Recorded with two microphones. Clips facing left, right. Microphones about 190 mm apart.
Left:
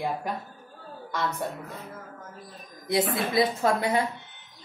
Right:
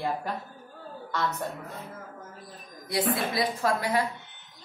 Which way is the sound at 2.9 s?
20° left (ahead or behind).